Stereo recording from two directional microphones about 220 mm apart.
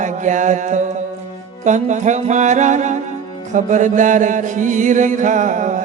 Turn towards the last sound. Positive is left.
turn(degrees=-35)  # may be behind; listen again after turning